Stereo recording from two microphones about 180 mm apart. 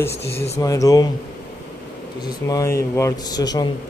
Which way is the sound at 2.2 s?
20° left (ahead or behind).